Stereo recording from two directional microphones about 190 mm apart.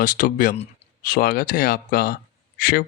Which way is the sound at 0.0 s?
45° left (ahead or behind).